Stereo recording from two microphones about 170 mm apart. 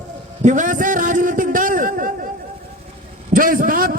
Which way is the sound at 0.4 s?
45° right (ahead or behind).